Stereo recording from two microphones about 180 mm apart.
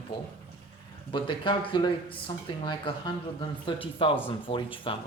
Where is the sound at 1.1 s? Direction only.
25° left (ahead or behind).